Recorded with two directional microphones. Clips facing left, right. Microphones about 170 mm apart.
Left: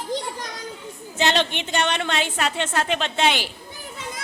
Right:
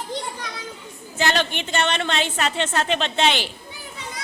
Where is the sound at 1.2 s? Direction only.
20° left (ahead or behind).